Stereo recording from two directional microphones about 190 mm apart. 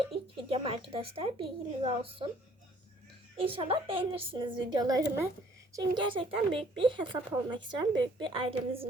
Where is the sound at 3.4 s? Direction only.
30° right (ahead or behind).